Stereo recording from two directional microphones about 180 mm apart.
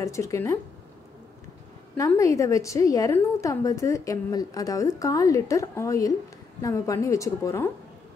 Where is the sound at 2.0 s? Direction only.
15° left (ahead or behind).